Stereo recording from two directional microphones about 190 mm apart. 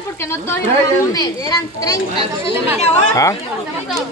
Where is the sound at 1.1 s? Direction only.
20° left (ahead or behind).